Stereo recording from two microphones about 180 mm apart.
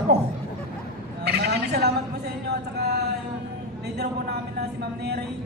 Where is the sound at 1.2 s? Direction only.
65° right (ahead or behind).